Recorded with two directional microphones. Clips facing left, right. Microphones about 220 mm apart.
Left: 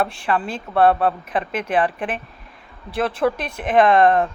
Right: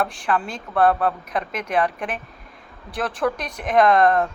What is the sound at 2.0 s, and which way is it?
Speech, 30° left (ahead or behind).